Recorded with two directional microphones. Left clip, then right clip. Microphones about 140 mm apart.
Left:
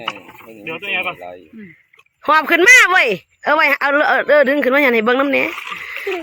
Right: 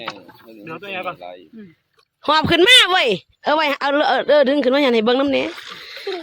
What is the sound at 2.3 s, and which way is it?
Speech, 30° right (ahead or behind).